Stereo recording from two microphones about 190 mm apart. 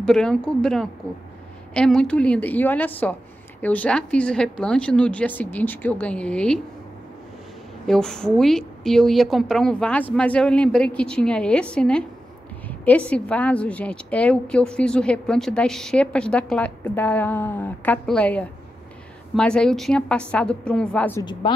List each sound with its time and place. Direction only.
0.0 s a woman's voice: 5° left (ahead or behind)
7.8 s a woman's voice: 5° left (ahead or behind)
21.2 s speech: 25° left (ahead or behind)